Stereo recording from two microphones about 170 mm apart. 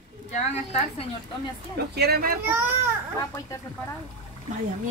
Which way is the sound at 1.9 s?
70° right (ahead or behind).